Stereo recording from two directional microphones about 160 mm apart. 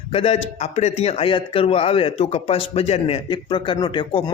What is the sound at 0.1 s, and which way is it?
Speech, 35° left (ahead or behind).